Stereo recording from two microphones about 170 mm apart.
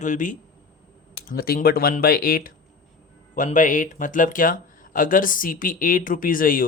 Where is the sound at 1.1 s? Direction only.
65° left (ahead or behind).